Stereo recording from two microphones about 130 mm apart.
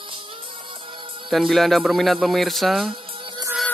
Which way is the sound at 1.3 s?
Centre (ahead or behind).